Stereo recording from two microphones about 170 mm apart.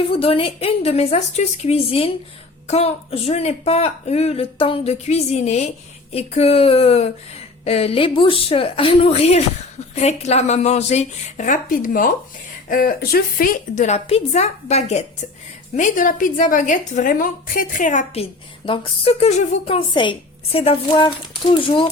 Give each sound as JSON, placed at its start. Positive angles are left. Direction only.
{"t": 0.1, "sound": "a woman's voice", "side_deg": 35}